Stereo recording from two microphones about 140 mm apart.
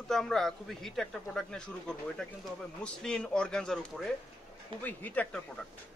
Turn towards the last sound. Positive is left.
turn(degrees=10)  # may be behind; listen again after turning